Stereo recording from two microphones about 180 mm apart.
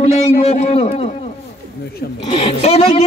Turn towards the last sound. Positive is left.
turn(degrees=35)  # may be behind; listen again after turning